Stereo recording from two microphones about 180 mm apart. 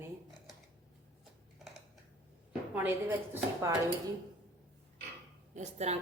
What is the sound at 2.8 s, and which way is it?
Speech, 10° right (ahead or behind).